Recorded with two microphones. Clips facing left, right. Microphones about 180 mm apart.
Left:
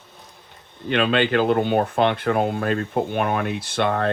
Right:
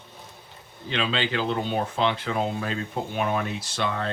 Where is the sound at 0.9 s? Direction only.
60° left (ahead or behind).